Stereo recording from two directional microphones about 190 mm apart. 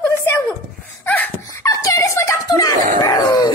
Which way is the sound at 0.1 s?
15° left (ahead or behind).